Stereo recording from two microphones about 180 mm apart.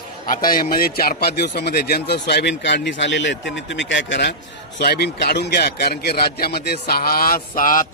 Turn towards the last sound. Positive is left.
turn(degrees=50)  # may be behind; listen again after turning